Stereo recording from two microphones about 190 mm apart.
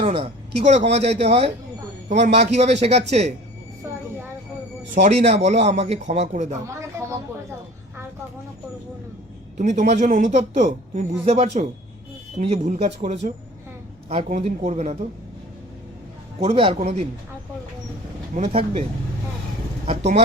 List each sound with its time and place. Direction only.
0.0 s speech: 30° right (ahead or behind)
4.9 s speech: 35° right (ahead or behind)
9.6 s speech: 40° right (ahead or behind)
16.4 s speech: 30° right (ahead or behind)
18.3 s speech: 35° right (ahead or behind)
19.8 s speech: 35° right (ahead or behind)